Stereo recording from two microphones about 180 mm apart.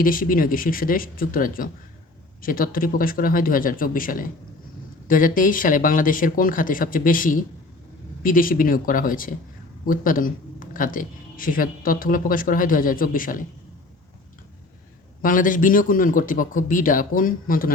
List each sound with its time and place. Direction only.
0.0 s speech: 50° left (ahead or behind)
15.2 s speech: 50° left (ahead or behind)